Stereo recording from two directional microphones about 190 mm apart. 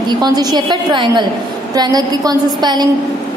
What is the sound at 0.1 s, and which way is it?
A woman's voice, 20° right (ahead or behind).